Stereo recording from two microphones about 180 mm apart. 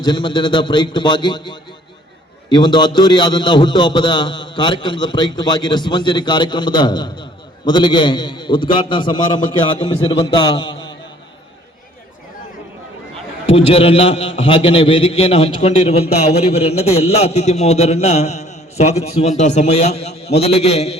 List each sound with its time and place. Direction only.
0.0 s a man's voice: 25° left (ahead or behind)
13.5 s a man's voice: 35° left (ahead or behind)